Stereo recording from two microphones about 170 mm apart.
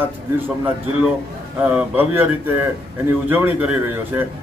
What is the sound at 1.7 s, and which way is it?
A man's voice, 10° right (ahead or behind).